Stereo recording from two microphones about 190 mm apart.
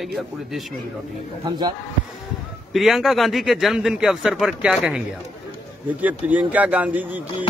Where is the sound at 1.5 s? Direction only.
20° right (ahead or behind).